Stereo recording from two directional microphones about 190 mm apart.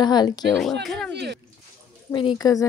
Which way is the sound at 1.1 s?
60° right (ahead or behind).